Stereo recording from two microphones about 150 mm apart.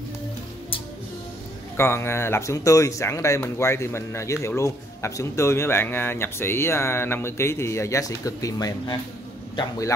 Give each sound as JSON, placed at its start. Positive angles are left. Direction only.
{"t": 1.8, "sound": "a man's voice", "side_deg": 15}